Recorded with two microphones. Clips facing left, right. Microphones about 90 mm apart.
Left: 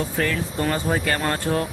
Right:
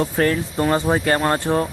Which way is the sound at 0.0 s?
40° right (ahead or behind).